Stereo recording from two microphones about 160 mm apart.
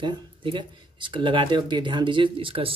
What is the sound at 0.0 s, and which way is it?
Speech, 30° right (ahead or behind).